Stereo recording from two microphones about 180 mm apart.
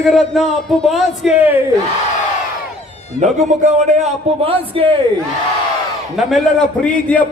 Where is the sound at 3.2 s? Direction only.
40° right (ahead or behind).